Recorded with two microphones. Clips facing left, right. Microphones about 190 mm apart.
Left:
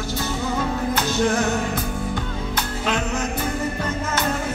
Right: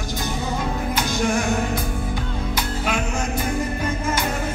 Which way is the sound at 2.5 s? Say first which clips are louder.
Left 1 dB; 10° right (ahead or behind).